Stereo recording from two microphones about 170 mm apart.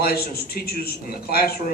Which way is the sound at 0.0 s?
65° left (ahead or behind).